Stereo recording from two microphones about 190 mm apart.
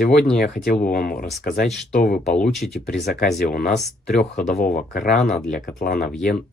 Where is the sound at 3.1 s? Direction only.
55° left (ahead or behind).